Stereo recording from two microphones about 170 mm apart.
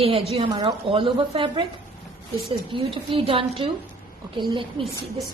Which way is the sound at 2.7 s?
30° right (ahead or behind).